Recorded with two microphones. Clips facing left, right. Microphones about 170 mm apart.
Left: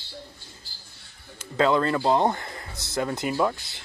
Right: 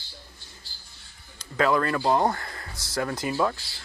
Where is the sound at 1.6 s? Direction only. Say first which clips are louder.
Left 2 dB; 25° left (ahead or behind).